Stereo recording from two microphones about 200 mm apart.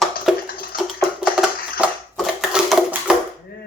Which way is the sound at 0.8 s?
Centre (ahead or behind).